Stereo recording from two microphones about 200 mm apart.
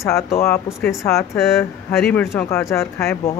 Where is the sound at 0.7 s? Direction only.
Centre (ahead or behind).